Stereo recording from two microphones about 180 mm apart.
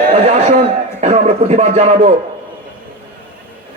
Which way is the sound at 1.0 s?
35° right (ahead or behind).